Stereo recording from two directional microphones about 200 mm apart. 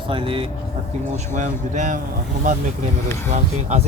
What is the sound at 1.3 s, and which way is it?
Speech, 40° right (ahead or behind).